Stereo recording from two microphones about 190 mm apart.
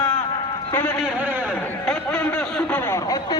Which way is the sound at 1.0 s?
10° right (ahead or behind).